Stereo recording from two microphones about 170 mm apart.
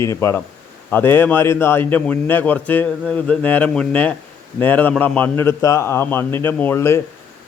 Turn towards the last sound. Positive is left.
turn(degrees=15)  # may be behind; listen again after turning